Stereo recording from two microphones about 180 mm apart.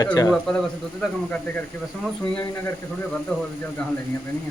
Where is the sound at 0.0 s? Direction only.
20° left (ahead or behind).